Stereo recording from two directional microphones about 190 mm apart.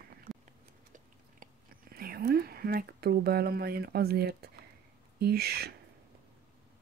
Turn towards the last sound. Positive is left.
turn(degrees=-55)  # may be behind; listen again after turning